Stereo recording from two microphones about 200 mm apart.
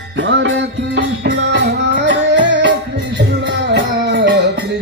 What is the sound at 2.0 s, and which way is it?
Music, 65° right (ahead or behind).